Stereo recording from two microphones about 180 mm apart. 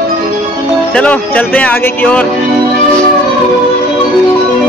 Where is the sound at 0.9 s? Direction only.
10° left (ahead or behind).